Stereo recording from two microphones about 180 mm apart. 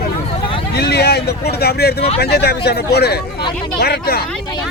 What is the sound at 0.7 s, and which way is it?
Speech, 65° left (ahead or behind).